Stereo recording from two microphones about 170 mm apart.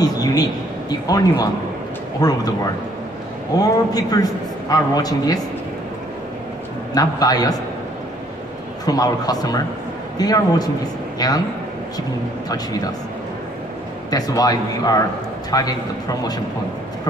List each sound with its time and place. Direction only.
0.0 s a man's voice: 20° left (ahead or behind)
3.6 s a man's voice: 20° left (ahead or behind)
6.9 s a man's voice: 20° left (ahead or behind)
8.8 s a man's voice: 20° left (ahead or behind)
12.4 s a man's voice: 20° left (ahead or behind)
14.1 s a man's voice: 20° left (ahead or behind)